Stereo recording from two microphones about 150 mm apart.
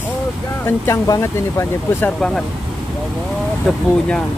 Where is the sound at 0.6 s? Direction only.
20° left (ahead or behind).